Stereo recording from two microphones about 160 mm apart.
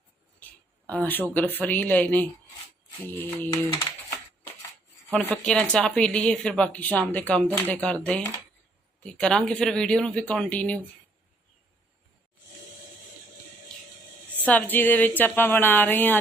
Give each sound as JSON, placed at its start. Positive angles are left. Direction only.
{"t": 0.9, "sound": "a woman's voice", "side_deg": 10}
{"t": 3.5, "sound": "typing", "side_deg": 20}
{"t": 5.1, "sound": "a woman's voice", "side_deg": 5}
{"t": 14.4, "sound": "a woman's voice", "side_deg": 10}